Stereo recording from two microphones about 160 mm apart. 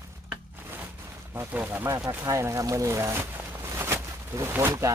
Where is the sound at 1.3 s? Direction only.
15° right (ahead or behind).